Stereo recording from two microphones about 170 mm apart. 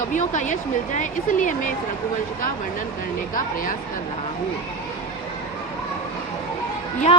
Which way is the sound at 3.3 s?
55° left (ahead or behind).